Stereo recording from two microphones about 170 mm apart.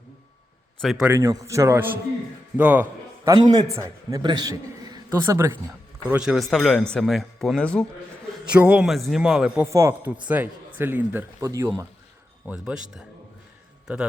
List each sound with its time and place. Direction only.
0.8 s a man's voice: centre (ahead or behind)
1.1 s speech: 15° right (ahead or behind)
3.2 s a man's voice: 25° right (ahead or behind)
6.1 s a man's voice: 5° right (ahead or behind)
8.3 s a man's voice: 5° right (ahead or behind)
9.6 s speech: 15° right (ahead or behind)
12.5 s a man's voice: 5° right (ahead or behind)
13.8 s a man's voice: 5° right (ahead or behind)